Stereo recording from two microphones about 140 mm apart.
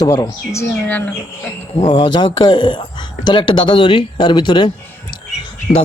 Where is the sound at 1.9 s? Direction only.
35° left (ahead or behind).